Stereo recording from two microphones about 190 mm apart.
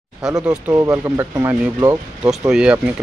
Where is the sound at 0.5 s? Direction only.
15° right (ahead or behind).